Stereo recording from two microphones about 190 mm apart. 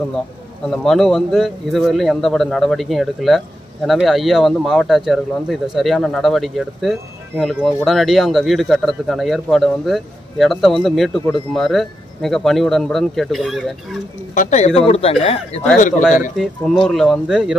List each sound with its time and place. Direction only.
0.7 s a man's voice: centre (ahead or behind)
14.3 s speech: 40° left (ahead or behind)
16.3 s a man's voice: centre (ahead or behind)